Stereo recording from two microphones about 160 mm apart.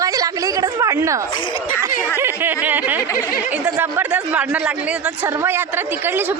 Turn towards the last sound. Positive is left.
turn(degrees=-15)  # may be behind; listen again after turning